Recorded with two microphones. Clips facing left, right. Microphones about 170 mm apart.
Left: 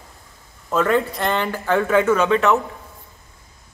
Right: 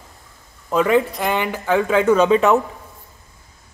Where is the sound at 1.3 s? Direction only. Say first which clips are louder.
Right 1 dB; 15° right (ahead or behind).